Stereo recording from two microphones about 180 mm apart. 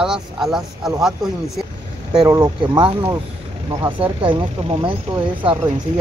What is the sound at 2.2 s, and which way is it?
Speech, 20° right (ahead or behind).